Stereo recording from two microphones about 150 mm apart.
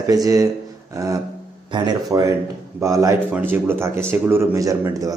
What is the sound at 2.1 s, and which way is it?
A man's voice, 15° right (ahead or behind).